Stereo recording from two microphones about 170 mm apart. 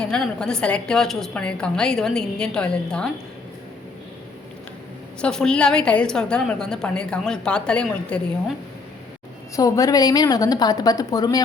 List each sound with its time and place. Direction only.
0.0 s a woman's voice: 5° left (ahead or behind)
5.2 s a woman's voice: 5° left (ahead or behind)
9.6 s a woman's voice: 20° left (ahead or behind)